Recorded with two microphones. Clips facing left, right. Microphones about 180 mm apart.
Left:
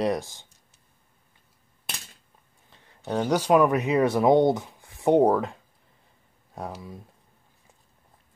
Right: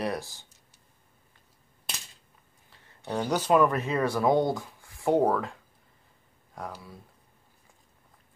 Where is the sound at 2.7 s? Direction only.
15° left (ahead or behind).